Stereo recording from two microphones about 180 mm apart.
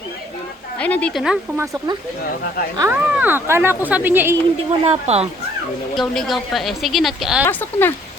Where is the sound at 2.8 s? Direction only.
10° right (ahead or behind).